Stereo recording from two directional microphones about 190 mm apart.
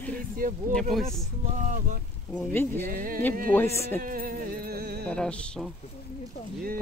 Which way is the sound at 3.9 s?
45° right (ahead or behind).